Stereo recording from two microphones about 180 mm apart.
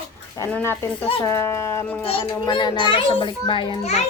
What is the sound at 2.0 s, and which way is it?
A child's voice, 30° left (ahead or behind).